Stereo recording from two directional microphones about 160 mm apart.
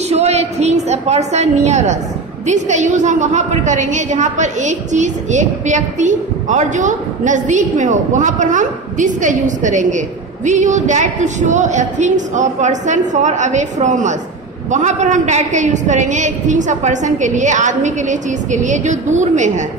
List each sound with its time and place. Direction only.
0.1 s a woman's voice: 40° right (ahead or behind)